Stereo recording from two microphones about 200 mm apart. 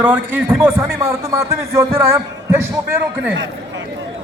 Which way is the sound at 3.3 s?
70° right (ahead or behind).